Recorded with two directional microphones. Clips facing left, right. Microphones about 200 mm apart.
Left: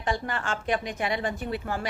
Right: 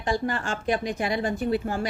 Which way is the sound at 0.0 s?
35° right (ahead or behind).